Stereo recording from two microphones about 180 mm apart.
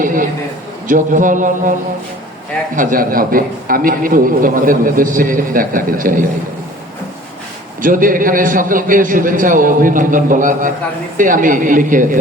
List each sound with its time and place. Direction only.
0.0 s a sound: 50° right (ahead or behind)
0.9 s a man's voice: 45° right (ahead or behind)
2.7 s a man's voice: 50° right (ahead or behind)
7.8 s a man's voice: 50° right (ahead or behind)